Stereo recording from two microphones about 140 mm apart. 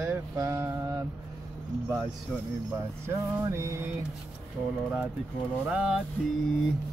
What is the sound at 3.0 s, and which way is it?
Mantra, 20° right (ahead or behind).